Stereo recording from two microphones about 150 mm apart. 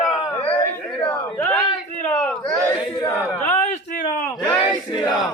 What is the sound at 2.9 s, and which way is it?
Speech, 25° left (ahead or behind).